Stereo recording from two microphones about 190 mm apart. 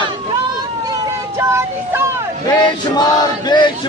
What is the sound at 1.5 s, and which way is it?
Child singing, 15° right (ahead or behind).